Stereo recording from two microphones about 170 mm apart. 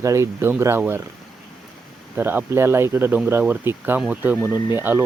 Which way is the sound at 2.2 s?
10° right (ahead or behind).